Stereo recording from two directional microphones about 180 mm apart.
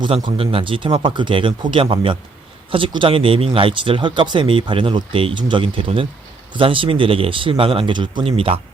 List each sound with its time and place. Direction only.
0.0 s speech: 25° right (ahead or behind)